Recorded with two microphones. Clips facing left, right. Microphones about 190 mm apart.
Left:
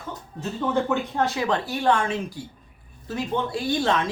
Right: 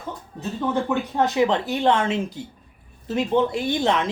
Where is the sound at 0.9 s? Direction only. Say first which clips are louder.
Right 2 dB; 15° right (ahead or behind).